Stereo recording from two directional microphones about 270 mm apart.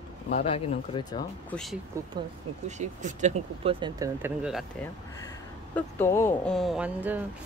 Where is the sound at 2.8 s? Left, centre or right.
Right; by 4.6 s centre.